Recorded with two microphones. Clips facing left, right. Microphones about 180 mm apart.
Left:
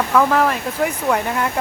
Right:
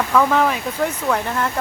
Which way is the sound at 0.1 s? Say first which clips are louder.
Left 1 dB; 5° left (ahead or behind).